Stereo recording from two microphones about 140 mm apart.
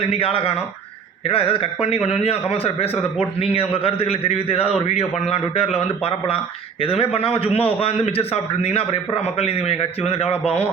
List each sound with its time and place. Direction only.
0.1 s a man's voice: 40° left (ahead or behind)